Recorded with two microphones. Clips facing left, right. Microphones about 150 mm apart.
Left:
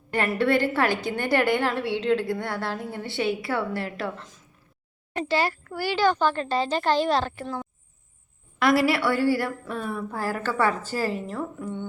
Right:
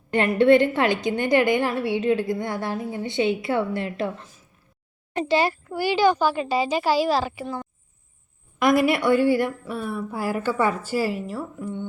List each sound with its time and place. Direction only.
0.1 s a woman's voice: 20° right (ahead or behind)
5.1 s a woman's voice: 20° right (ahead or behind)
8.5 s a woman's voice: 15° right (ahead or behind)
9.6 s a woman's voice: 5° right (ahead or behind)